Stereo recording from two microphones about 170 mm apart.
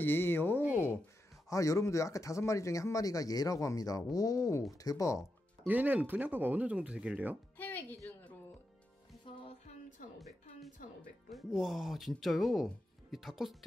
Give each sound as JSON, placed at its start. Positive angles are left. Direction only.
{"t": 0.0, "sound": "speech", "side_deg": 10}
{"t": 5.7, "sound": "speech", "side_deg": -10}
{"t": 7.5, "sound": "speech", "side_deg": 10}
{"t": 9.2, "sound": "music", "side_deg": 30}
{"t": 11.3, "sound": "speech", "side_deg": 0}